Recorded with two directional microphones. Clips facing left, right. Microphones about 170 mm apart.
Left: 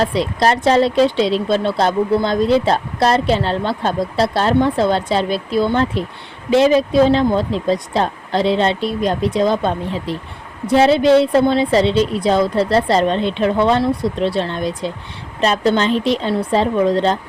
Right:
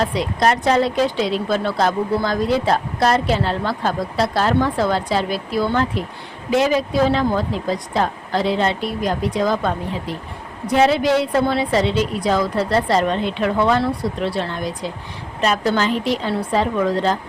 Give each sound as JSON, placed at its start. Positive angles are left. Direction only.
{"t": 0.0, "sound": "speech", "side_deg": 30}